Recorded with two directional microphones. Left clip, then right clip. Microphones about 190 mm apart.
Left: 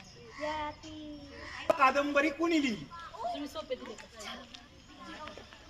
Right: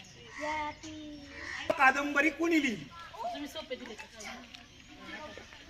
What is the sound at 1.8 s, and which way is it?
Speech, 50° left (ahead or behind).